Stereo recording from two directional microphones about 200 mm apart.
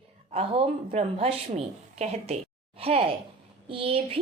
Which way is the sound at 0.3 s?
30° right (ahead or behind).